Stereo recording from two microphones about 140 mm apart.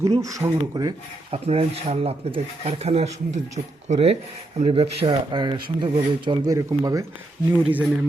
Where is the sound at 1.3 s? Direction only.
45° right (ahead or behind); by 7.0 s 25° right (ahead or behind).